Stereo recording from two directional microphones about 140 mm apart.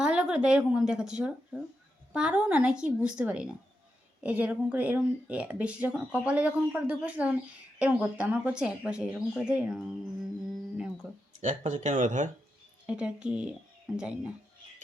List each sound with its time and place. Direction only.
0.0 s speech: 5° right (ahead or behind)
11.0 s speech: 5° right (ahead or behind)
11.4 s speech: 55° right (ahead or behind)
12.8 s speech: 5° right (ahead or behind)